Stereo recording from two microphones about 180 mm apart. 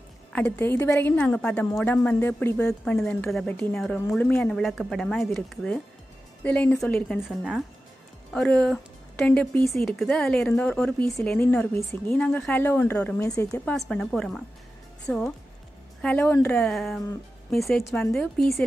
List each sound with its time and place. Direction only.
0.3 s a woman's voice: 10° left (ahead or behind)